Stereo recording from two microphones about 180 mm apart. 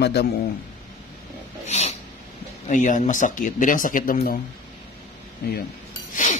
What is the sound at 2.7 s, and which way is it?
Speech, 45° left (ahead or behind).